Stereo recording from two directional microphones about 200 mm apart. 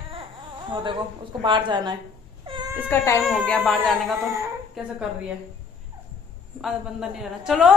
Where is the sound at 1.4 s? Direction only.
25° right (ahead or behind).